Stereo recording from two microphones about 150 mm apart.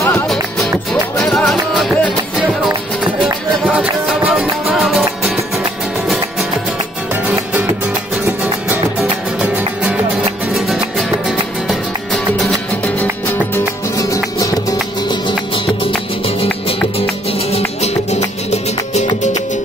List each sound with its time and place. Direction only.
1.1 s music: 5° left (ahead or behind)
3.7 s music: 5° right (ahead or behind)
8.6 s music: 10° right (ahead or behind)
13.3 s music: 20° left (ahead or behind)
17.5 s music: 45° left (ahead or behind)